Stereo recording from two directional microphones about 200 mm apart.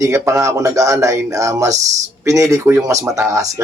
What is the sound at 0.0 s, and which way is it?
Speech, 15° right (ahead or behind).